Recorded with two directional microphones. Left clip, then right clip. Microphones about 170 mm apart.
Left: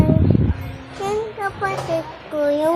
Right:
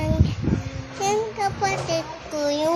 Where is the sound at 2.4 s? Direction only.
10° left (ahead or behind).